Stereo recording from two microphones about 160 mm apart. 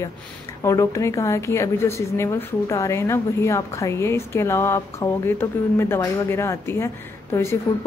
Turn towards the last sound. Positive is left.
turn(degrees=15)  # may be behind; listen again after turning